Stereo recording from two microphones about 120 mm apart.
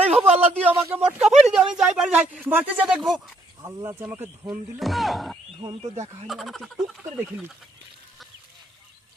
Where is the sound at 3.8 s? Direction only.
20° right (ahead or behind).